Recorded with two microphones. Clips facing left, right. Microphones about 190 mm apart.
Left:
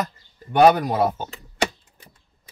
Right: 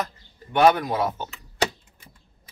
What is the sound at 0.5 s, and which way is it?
Speech, 40° left (ahead or behind).